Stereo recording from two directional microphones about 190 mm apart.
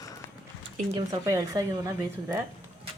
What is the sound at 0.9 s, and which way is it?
Speech, 20° right (ahead or behind).